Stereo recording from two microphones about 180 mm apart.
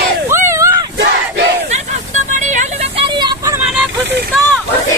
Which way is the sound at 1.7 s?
40° right (ahead or behind).